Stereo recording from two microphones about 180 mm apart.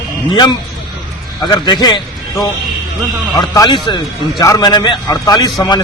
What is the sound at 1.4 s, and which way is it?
Speech, 25° left (ahead or behind).